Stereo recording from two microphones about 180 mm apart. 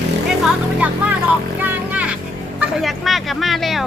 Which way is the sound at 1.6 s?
10° right (ahead or behind).